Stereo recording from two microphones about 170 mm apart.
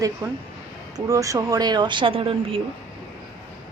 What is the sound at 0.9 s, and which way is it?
Speech, 20° right (ahead or behind).